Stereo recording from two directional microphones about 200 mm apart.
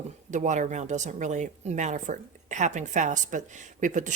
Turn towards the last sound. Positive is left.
turn(degrees=-40)  # may be behind; listen again after turning